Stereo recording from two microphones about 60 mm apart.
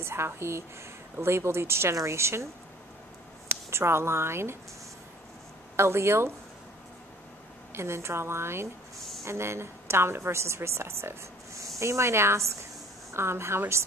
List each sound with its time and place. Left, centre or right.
0.0 s a woman's voice: right
3.7 s a woman's voice: right
5.8 s a woman's voice: right
7.7 s a woman's voice: right